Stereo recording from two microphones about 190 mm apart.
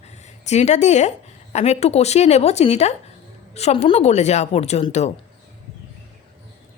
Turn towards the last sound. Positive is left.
turn(degrees=35)  # may be behind; listen again after turning